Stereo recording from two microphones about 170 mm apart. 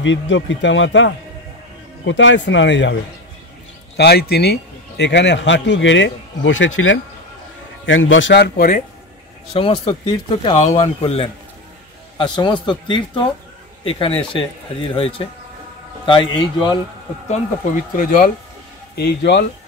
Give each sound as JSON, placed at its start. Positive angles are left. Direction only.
{"t": 0.0, "sound": "a man's voice", "side_deg": 90}
{"t": 3.9, "sound": "a man's voice", "side_deg": 70}
{"t": 9.5, "sound": "speech", "side_deg": 30}
{"t": 10.5, "sound": "speech", "side_deg": 40}
{"t": 17.9, "sound": "speech", "side_deg": 55}
{"t": 18.9, "sound": "speech", "side_deg": 75}